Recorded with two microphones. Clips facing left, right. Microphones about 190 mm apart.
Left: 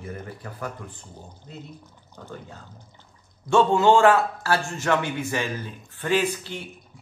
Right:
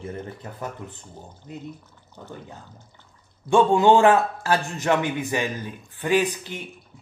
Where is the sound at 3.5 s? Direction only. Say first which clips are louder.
Right 1 dB; 15° right (ahead or behind).